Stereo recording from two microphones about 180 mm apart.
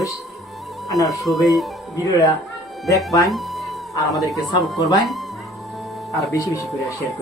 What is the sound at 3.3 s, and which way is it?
Music, centre (ahead or behind).